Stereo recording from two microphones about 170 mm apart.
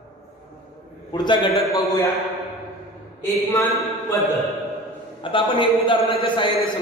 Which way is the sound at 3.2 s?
15° left (ahead or behind).